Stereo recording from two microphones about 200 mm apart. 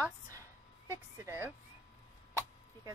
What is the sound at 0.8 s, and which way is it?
Speech, 15° right (ahead or behind).